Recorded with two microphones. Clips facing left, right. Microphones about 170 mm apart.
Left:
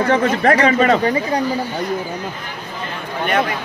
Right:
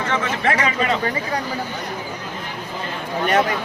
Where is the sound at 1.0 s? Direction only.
20° left (ahead or behind).